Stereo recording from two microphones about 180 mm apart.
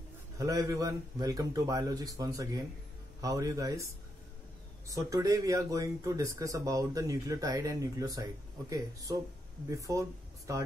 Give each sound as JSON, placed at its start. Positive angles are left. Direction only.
{"t": 0.4, "sound": "speech", "side_deg": -20}